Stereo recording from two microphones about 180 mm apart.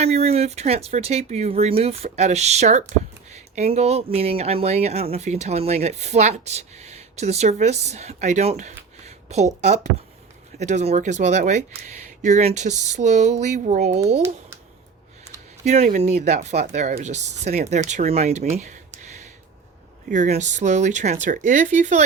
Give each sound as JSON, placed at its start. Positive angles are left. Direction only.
{"t": 0.0, "sound": "speech", "side_deg": -35}
{"t": 15.6, "sound": "speech", "side_deg": -40}
{"t": 20.1, "sound": "speech", "side_deg": -40}